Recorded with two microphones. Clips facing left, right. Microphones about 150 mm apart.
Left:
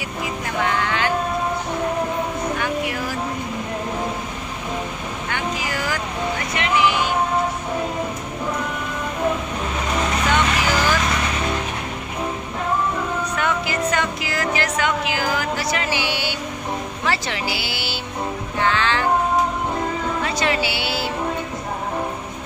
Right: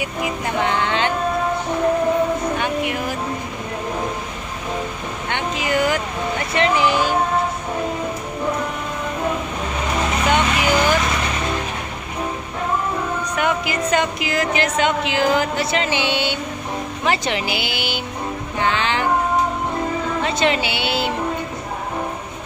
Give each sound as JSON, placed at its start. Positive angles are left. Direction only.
{"t": 0.7, "sound": "a sound", "side_deg": -20}
{"t": 5.3, "sound": "speech", "side_deg": -20}
{"t": 6.5, "sound": "speech", "side_deg": -35}
{"t": 10.3, "sound": "vehicle", "side_deg": -20}
{"t": 13.4, "sound": "speech", "side_deg": -20}
{"t": 18.6, "sound": "music", "side_deg": -15}
{"t": 20.2, "sound": "speech", "side_deg": -25}